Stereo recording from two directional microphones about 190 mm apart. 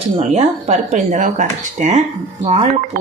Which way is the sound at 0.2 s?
35° right (ahead or behind).